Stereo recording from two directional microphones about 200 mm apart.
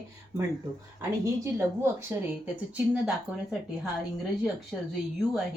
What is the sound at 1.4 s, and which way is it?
Speech, 15° right (ahead or behind).